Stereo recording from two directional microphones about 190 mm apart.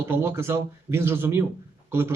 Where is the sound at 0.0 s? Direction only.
15° right (ahead or behind).